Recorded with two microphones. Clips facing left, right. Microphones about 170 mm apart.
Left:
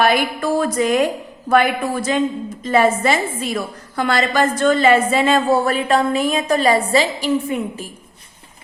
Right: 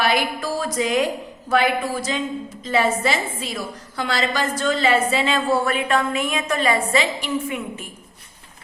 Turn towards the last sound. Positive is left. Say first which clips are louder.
# left 5 dB
turn(degrees=35)  # may be behind; listen again after turning